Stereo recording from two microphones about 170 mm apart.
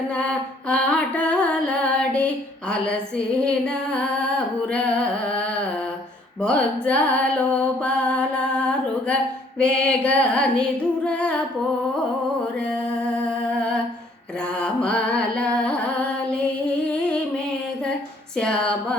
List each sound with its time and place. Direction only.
0.1 s music: 5° left (ahead or behind)
12.5 s music: 5° left (ahead or behind)
13.5 s humming: 5° left (ahead or behind)
14.6 s carnatic music: 5° left (ahead or behind)
16.9 s a sound: 5° left (ahead or behind)